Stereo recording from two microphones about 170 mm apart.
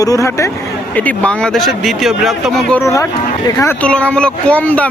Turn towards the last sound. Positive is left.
turn(degrees=10)  # may be behind; listen again after turning